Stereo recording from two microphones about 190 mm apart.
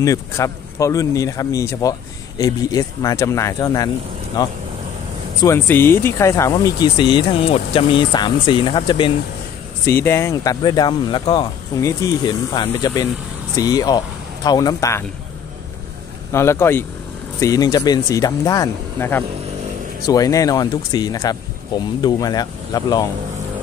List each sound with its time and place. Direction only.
0.0 s speech: 15° left (ahead or behind)
9.8 s speech: 15° left (ahead or behind)
16.3 s speech: 15° left (ahead or behind)